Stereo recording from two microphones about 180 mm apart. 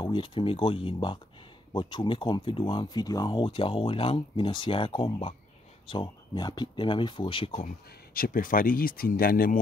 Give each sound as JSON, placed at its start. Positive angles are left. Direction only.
{"t": 0.0, "sound": "speech", "side_deg": 25}
{"t": 7.5, "sound": "speech", "side_deg": 50}